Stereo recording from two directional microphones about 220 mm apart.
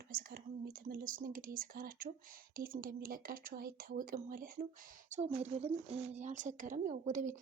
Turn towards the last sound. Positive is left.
turn(degrees=-35)  # may be behind; listen again after turning